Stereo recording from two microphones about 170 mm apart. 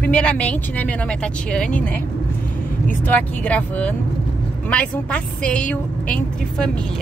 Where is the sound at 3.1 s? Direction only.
10° left (ahead or behind).